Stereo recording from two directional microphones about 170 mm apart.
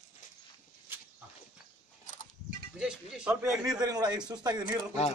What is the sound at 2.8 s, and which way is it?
A man's voice, 5° right (ahead or behind).